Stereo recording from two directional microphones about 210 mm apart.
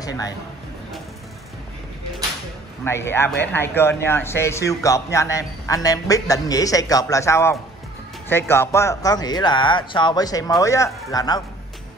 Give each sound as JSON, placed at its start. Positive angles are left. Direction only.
{"t": 0.0, "sound": "speech", "side_deg": 15}
{"t": 2.8, "sound": "a man's voice", "side_deg": 10}